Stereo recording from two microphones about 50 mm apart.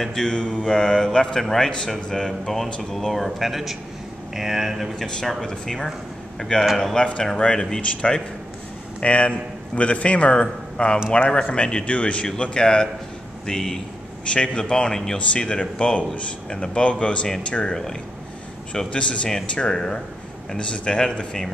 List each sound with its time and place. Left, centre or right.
0.0 s a man's voice: centre
4.9 s a man's voice: centre
9.0 s a man's voice: left
18.9 s a man's voice: left